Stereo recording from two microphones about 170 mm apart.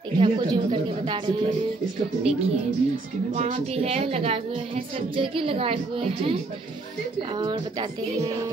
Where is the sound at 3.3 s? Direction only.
40° right (ahead or behind); by 8.5 s 20° right (ahead or behind).